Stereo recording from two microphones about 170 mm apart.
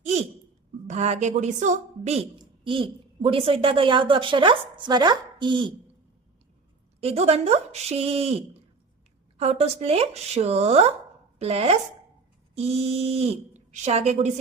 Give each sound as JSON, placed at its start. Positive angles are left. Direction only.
{"t": 0.0, "sound": "a sound", "side_deg": -40}
{"t": 0.9, "sound": "a woman's voice", "side_deg": -40}
{"t": 2.4, "sound": "a woman's voice", "side_deg": -30}
{"t": 7.0, "sound": "speech", "side_deg": -40}